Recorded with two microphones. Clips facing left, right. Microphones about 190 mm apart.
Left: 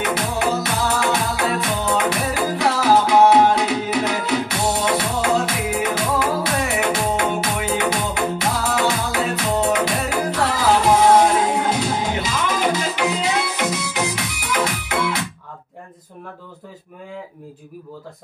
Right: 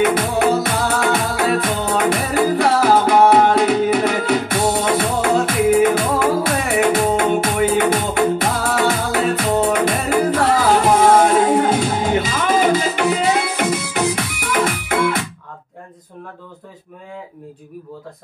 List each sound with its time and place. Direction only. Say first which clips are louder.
0.0 s music: right 6 dB; 55° right (ahead or behind)